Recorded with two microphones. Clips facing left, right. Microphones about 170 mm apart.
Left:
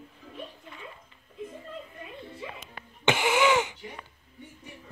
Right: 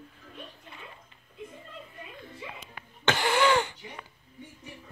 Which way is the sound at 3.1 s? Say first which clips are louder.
Left 1 dB; 10° left (ahead or behind).